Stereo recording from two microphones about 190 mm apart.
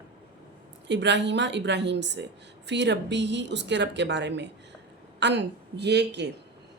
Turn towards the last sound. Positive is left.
turn(degrees=-65)  # may be behind; listen again after turning